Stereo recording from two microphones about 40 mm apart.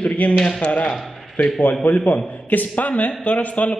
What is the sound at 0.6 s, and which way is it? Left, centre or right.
A man's voice, left.